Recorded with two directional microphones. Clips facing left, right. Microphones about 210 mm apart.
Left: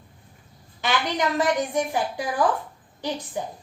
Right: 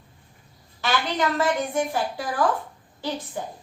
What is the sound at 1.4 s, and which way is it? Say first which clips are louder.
A woman's voice: left 1 dB; 15° left (ahead or behind).